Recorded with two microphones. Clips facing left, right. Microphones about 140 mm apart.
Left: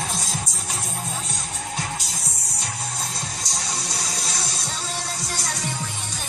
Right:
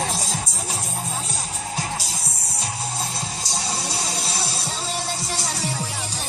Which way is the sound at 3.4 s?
30° right (ahead or behind).